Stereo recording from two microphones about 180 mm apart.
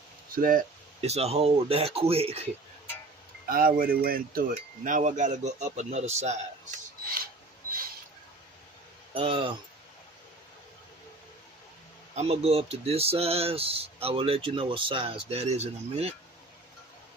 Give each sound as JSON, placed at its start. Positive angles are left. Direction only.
{"t": 0.3, "sound": "wind chime", "side_deg": -50}
{"t": 1.0, "sound": "speech", "side_deg": -35}
{"t": 3.4, "sound": "wind chime", "side_deg": -50}
{"t": 9.1, "sound": "speech", "side_deg": -30}
{"t": 12.1, "sound": "speech", "side_deg": -35}